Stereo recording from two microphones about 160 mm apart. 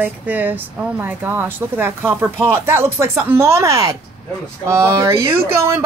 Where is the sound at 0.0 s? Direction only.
10° right (ahead or behind).